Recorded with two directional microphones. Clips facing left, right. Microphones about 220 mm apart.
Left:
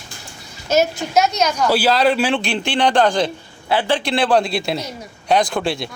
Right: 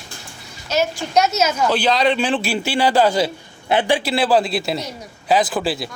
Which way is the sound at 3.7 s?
15° right (ahead or behind).